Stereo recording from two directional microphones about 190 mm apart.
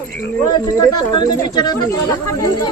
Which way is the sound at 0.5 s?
20° left (ahead or behind).